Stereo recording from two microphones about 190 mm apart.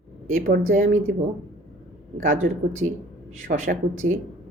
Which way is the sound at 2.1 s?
45° right (ahead or behind).